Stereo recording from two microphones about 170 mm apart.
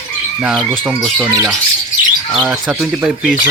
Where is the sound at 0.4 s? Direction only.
10° right (ahead or behind).